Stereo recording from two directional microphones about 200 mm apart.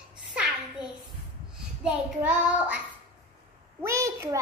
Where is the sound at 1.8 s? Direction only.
5° right (ahead or behind).